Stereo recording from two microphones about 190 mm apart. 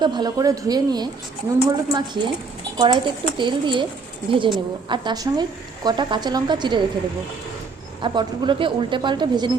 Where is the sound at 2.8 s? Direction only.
25° right (ahead or behind).